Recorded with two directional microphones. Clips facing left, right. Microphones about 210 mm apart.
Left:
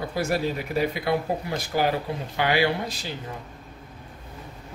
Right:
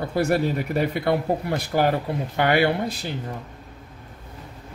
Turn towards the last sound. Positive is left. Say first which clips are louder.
# right 3 dB
turn(degrees=-60)  # may be behind; listen again after turning